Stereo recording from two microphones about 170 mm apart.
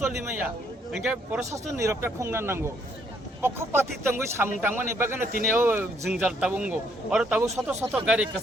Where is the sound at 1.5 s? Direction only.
15° right (ahead or behind).